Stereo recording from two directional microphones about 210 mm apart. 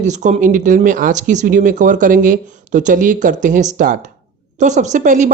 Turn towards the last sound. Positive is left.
turn(degrees=-35)  # may be behind; listen again after turning